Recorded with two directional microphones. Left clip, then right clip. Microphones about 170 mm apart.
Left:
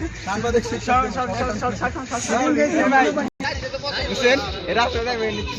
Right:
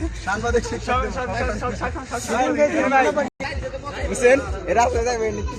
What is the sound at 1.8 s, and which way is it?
Speech, 40° right (ahead or behind).